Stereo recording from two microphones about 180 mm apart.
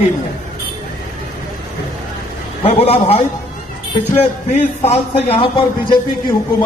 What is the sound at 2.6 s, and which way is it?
Speech, 35° left (ahead or behind).